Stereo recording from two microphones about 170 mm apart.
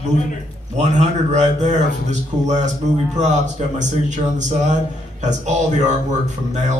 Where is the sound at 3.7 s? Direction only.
45° right (ahead or behind).